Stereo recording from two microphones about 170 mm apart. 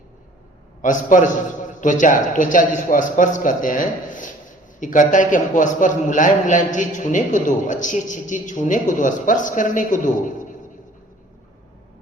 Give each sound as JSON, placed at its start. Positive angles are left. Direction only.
{"t": 0.8, "sound": "a man's voice", "side_deg": 50}